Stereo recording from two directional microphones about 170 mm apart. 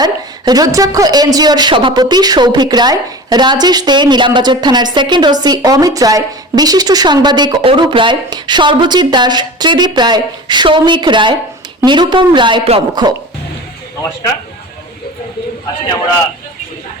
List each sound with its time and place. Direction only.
0.0 s a woman's voice: 25° right (ahead or behind)